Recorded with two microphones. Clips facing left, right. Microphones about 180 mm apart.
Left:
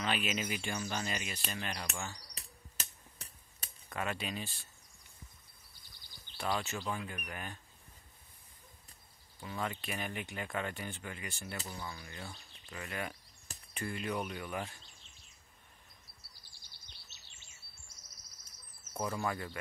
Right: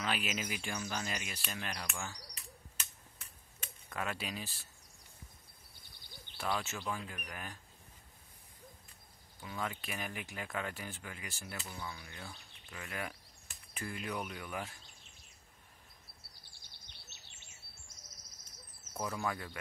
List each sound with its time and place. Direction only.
0.0 s speech: 5° right (ahead or behind)
2.3 s a sound: 35° left (ahead or behind)
3.9 s speech: centre (ahead or behind)
6.3 s speech: centre (ahead or behind)
9.4 s speech: centre (ahead or behind)
16.2 s a sound: 60° right (ahead or behind)
18.9 s speech: centre (ahead or behind)